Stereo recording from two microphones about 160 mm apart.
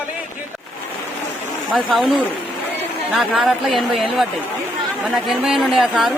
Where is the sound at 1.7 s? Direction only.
5° right (ahead or behind).